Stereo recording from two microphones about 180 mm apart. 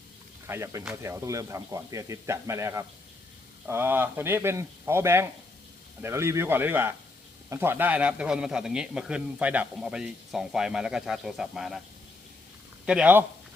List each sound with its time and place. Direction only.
0.4 s a man's voice: 15° right (ahead or behind)
12.8 s speech: 5° right (ahead or behind)